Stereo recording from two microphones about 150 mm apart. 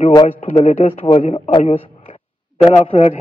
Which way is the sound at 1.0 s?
35° left (ahead or behind).